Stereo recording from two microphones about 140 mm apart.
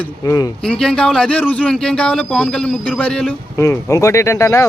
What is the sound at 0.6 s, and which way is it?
Speech, 5° left (ahead or behind).